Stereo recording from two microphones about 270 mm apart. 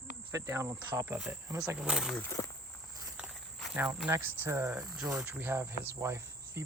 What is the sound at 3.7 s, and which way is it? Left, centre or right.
Speech, centre.